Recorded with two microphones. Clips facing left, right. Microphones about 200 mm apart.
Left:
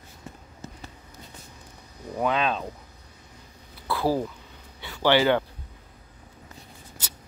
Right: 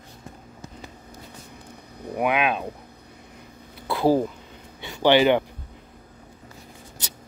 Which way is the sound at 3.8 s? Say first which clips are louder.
Right 5 dB; 20° right (ahead or behind).